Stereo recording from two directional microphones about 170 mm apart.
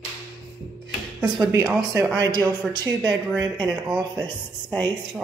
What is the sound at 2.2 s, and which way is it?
Speech, 25° right (ahead or behind).